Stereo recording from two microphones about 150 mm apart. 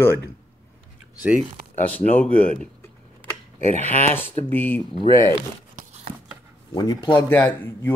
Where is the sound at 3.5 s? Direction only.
45° right (ahead or behind).